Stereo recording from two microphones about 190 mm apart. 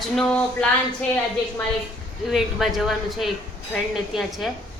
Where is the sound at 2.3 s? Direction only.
Centre (ahead or behind).